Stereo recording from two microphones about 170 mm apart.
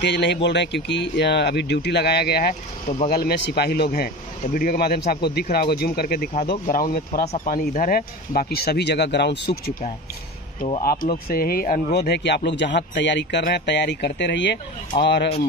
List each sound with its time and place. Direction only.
0.0 s speech: 90° left